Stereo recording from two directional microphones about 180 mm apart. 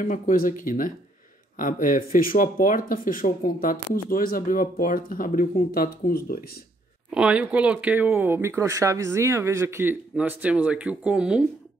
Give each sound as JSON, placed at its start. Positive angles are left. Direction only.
{"t": 0.0, "sound": "speech", "side_deg": 50}
{"t": 7.1, "sound": "speech", "side_deg": -5}